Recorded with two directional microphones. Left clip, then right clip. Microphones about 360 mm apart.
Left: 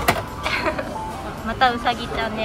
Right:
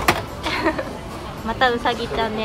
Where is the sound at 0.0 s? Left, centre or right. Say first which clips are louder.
Right 1 dB; centre.